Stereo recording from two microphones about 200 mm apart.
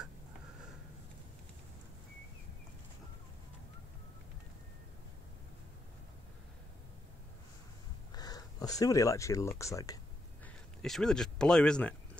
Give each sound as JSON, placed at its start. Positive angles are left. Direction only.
{"t": 8.1, "sound": "speech", "side_deg": 20}
{"t": 10.4, "sound": "speech", "side_deg": 5}